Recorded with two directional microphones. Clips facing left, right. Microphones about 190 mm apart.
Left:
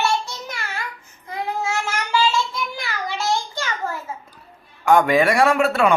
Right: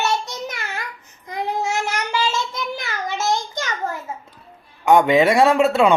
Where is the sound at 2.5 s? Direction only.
20° right (ahead or behind).